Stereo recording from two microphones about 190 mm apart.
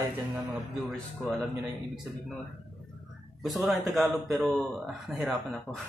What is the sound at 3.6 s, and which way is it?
Speech, centre (ahead or behind).